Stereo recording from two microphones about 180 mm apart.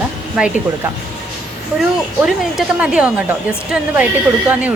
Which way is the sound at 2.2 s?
5° right (ahead or behind).